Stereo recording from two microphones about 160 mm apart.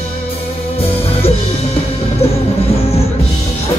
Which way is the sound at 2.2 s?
40° left (ahead or behind).